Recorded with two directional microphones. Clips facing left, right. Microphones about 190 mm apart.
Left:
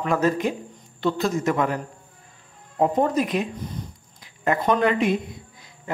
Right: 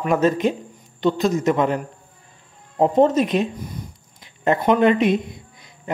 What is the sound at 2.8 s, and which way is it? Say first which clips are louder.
Speech: right 5 dB; 25° right (ahead or behind).